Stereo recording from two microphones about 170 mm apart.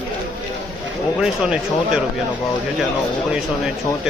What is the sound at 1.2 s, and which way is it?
Speech, 5° right (ahead or behind).